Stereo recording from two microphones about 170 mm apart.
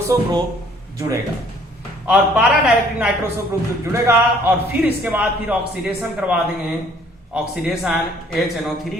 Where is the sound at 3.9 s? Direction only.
10° right (ahead or behind).